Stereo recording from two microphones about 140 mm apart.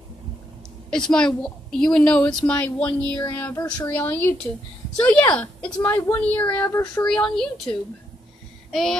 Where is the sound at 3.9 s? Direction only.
15° left (ahead or behind).